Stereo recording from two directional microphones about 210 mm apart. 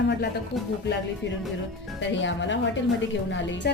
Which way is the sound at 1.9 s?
60° left (ahead or behind).